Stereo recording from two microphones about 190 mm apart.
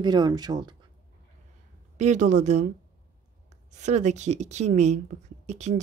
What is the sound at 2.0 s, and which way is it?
Speech, 40° right (ahead or behind).